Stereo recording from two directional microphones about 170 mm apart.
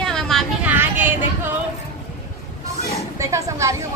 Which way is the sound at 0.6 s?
10° right (ahead or behind).